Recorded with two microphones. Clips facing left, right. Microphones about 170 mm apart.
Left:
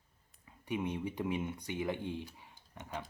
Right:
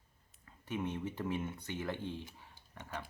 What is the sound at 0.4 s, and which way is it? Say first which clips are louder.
Speech: left 2 dB; 15° left (ahead or behind).